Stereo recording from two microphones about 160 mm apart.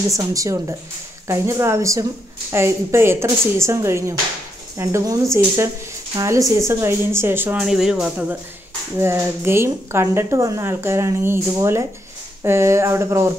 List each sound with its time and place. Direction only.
0.1 s speech: 20° right (ahead or behind)